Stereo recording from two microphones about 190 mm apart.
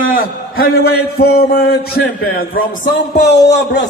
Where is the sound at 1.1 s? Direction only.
55° left (ahead or behind).